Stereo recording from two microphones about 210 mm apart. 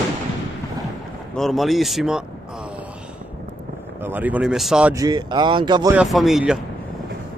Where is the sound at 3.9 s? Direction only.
10° right (ahead or behind).